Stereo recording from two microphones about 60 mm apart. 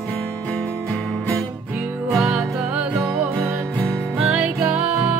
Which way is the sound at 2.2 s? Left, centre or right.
Centre.